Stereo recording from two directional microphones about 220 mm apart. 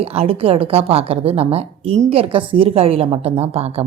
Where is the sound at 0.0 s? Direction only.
25° right (ahead or behind).